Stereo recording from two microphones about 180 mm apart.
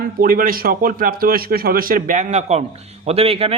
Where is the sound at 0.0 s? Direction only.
55° right (ahead or behind).